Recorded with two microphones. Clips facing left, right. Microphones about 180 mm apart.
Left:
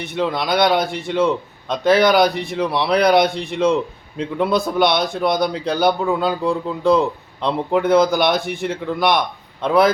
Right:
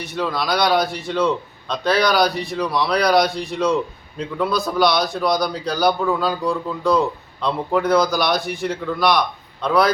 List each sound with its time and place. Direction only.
0.2 s a man's voice: 25° left (ahead or behind)